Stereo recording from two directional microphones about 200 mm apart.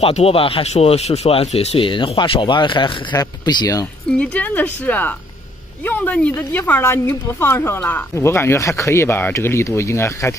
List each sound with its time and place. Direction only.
0.0 s speech: 30° left (ahead or behind)
4.2 s speech: 5° left (ahead or behind)